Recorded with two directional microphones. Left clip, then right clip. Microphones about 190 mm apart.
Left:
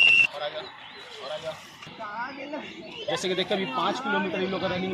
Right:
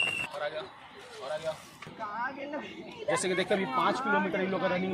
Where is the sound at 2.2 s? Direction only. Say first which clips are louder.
Left 1 dB; 25° left (ahead or behind).